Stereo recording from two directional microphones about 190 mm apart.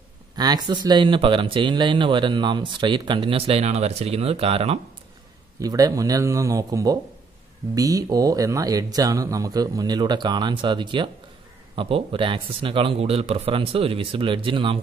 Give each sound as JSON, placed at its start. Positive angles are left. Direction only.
{"t": 0.4, "sound": "speech", "side_deg": -20}
{"t": 5.6, "sound": "speech", "side_deg": -20}